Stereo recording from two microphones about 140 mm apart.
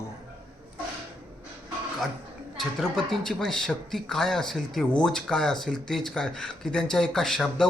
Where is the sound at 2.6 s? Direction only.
5° left (ahead or behind).